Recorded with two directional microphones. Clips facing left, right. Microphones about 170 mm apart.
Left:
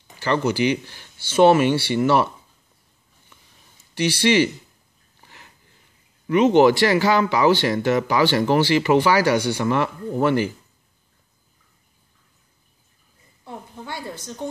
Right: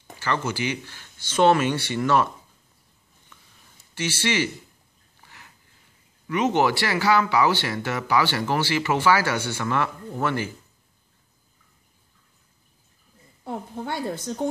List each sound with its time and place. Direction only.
0.2 s speech: 15° left (ahead or behind)
3.9 s speech: 15° left (ahead or behind)
6.3 s speech: 20° left (ahead or behind)
13.4 s a sound: 55° right (ahead or behind)